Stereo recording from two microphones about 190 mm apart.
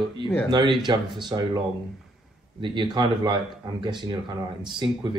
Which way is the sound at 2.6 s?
25° right (ahead or behind).